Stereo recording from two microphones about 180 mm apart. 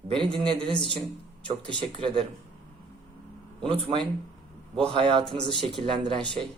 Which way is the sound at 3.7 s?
30° right (ahead or behind).